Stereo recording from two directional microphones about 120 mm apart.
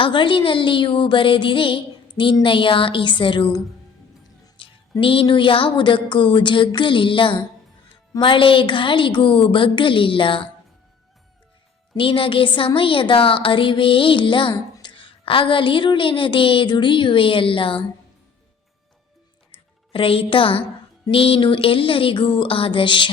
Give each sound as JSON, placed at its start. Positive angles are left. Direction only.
{"t": 0.0, "sound": "a woman's voice", "side_deg": 40}
{"t": 4.5, "sound": "a woman's voice", "side_deg": 45}
{"t": 11.9, "sound": "a woman's voice", "side_deg": 45}
{"t": 19.9, "sound": "a woman's voice", "side_deg": 50}